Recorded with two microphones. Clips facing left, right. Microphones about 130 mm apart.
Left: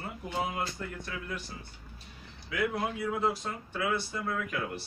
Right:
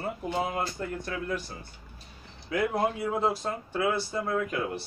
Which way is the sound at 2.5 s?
35° right (ahead or behind).